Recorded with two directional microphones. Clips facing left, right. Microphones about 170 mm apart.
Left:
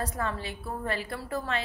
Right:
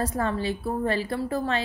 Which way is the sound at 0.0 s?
30° right (ahead or behind).